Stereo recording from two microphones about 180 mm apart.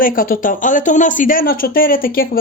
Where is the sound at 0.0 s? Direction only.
50° left (ahead or behind).